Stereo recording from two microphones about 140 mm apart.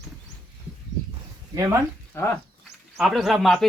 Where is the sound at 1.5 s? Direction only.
25° right (ahead or behind).